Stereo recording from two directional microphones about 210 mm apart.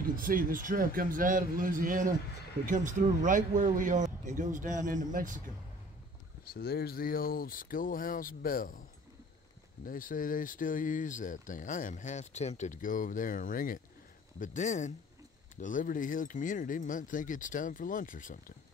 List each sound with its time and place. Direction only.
0.1 s speech: 40° right (ahead or behind)
6.5 s speech: 45° left (ahead or behind)
9.8 s speech: 40° left (ahead or behind)